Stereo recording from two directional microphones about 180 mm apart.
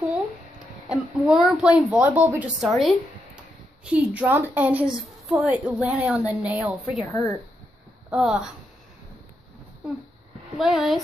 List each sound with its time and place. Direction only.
0.8 s a woman's voice: centre (ahead or behind)
7.1 s speech: 15° left (ahead or behind)
8.1 s speech: centre (ahead or behind)
10.6 s speech: centre (ahead or behind)